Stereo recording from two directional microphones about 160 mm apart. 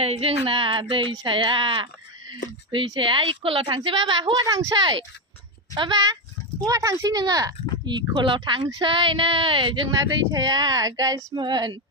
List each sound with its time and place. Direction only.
0.0 s a woman's voice: 40° right (ahead or behind)